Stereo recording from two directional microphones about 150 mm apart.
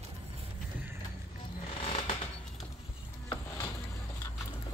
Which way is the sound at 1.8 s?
40° left (ahead or behind).